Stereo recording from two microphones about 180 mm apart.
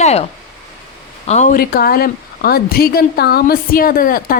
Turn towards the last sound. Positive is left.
turn(degrees=55)  # may be behind; listen again after turning